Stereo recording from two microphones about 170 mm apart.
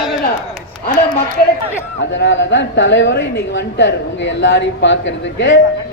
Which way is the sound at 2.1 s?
90° left.